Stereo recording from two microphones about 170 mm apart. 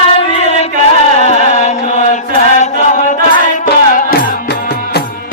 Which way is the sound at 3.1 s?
50° left (ahead or behind).